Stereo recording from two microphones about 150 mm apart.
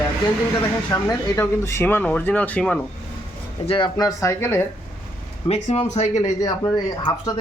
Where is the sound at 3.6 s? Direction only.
35° left (ahead or behind); by 4.7 s 15° left (ahead or behind).